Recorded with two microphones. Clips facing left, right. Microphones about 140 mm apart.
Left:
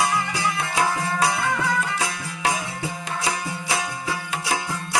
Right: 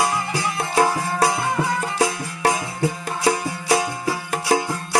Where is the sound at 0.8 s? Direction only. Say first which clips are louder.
Right 4 dB; 35° right (ahead or behind).